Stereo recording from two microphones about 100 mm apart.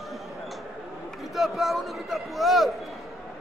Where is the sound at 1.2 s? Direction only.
Centre (ahead or behind).